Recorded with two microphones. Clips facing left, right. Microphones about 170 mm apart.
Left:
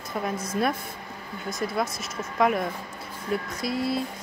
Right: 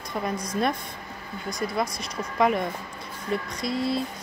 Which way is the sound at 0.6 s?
5° left (ahead or behind).